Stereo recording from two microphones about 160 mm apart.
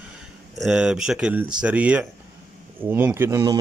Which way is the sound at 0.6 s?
5° right (ahead or behind).